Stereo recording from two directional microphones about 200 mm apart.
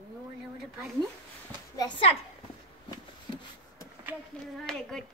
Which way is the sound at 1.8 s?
30° left (ahead or behind).